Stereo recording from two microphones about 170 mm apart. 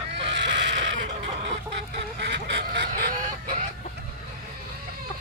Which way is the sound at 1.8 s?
85° right.